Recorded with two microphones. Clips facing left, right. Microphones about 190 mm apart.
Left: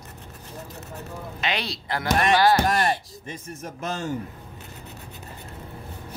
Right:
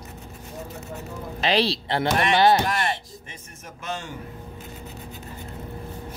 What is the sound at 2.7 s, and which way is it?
Speech, 40° left (ahead or behind).